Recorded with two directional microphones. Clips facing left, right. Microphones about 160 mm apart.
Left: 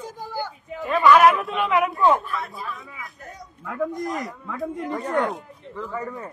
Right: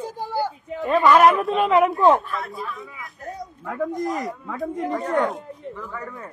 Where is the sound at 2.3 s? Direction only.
Centre (ahead or behind).